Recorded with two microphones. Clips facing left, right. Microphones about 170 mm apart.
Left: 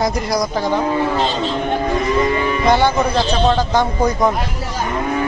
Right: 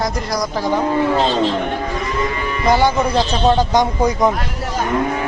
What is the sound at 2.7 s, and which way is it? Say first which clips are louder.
Speech: even; 10° right (ahead or behind).